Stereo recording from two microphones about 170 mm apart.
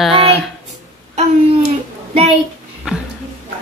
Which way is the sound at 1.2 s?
40° right (ahead or behind).